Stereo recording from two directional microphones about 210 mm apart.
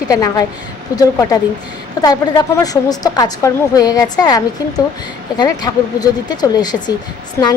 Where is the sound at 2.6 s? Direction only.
15° left (ahead or behind).